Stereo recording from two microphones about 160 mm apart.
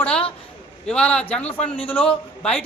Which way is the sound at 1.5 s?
35° left (ahead or behind).